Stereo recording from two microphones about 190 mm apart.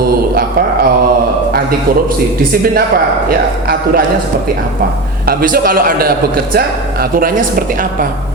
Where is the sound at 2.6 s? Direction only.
50° right (ahead or behind).